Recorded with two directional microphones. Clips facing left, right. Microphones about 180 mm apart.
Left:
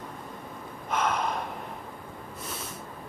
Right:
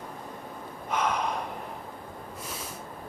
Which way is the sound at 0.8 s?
Centre (ahead or behind).